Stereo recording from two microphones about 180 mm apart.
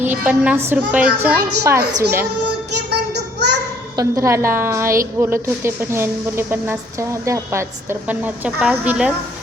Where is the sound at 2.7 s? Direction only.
65° right (ahead or behind).